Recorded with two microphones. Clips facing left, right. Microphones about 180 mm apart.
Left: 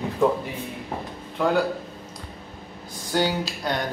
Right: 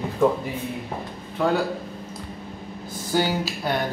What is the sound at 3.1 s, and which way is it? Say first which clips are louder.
Speech: right 1 dB; 5° right (ahead or behind).